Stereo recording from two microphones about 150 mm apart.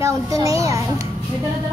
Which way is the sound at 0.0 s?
20° right (ahead or behind).